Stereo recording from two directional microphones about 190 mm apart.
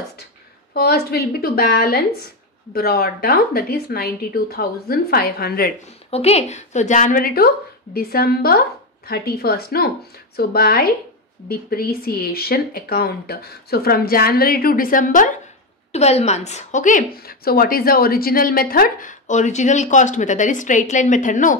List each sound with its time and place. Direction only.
0.7 s a woman's voice: 55° left (ahead or behind)
6.0 s speech: 35° left (ahead or behind)
15.9 s a woman's voice: 35° left (ahead or behind)